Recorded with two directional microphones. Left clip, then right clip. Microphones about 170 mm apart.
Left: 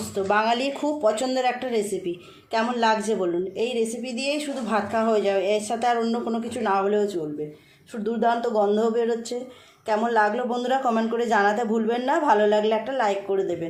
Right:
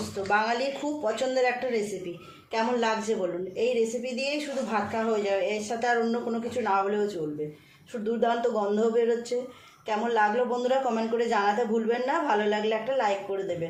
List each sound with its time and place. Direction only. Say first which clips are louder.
0.3 s a man's voice: left 3 dB; 45° left (ahead or behind)